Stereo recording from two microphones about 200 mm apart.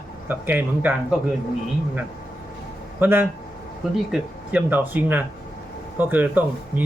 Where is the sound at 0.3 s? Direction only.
10° right (ahead or behind).